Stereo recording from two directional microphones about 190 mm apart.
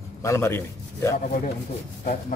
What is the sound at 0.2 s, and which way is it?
Speech, 15° left (ahead or behind).